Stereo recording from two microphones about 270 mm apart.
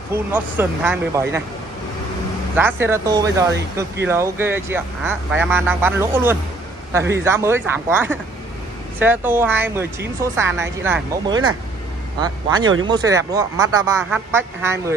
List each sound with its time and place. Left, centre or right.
0.1 s speech: centre
2.5 s speech: centre